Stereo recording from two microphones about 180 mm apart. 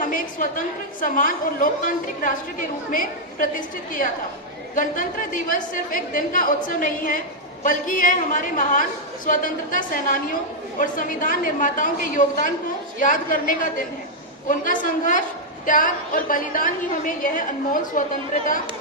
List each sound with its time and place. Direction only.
0.0 s a woman's voice: 45° left (ahead or behind)
4.7 s a woman's voice: 45° left (ahead or behind)